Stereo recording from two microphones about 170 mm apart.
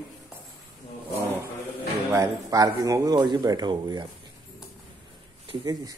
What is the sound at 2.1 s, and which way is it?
Speech, 20° right (ahead or behind).